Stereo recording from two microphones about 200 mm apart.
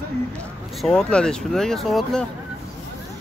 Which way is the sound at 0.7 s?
5° left (ahead or behind).